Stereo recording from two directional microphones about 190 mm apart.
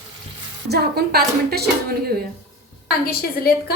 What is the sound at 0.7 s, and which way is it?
Speech, 55° right (ahead or behind).